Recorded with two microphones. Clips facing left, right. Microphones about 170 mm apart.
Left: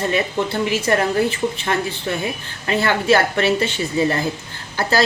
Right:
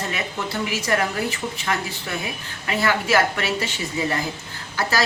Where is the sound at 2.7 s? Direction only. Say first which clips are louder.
Left 4 dB; 25° left (ahead or behind).